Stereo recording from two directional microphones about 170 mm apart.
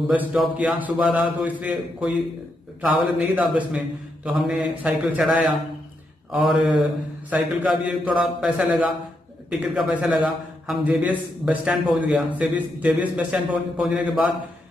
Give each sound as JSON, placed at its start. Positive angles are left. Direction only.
{"t": 0.1, "sound": "a man's voice", "side_deg": -5}